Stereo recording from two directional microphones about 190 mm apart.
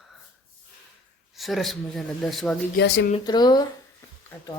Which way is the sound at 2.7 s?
65° left (ahead or behind).